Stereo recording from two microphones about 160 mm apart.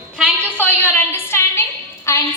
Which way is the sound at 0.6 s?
15° left (ahead or behind).